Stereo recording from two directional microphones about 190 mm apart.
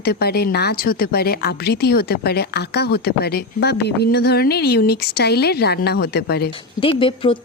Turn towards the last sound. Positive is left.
turn(degrees=25)  # may be behind; listen again after turning